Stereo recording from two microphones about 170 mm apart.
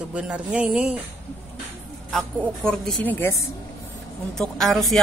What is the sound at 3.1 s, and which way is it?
Speech, 15° left (ahead or behind).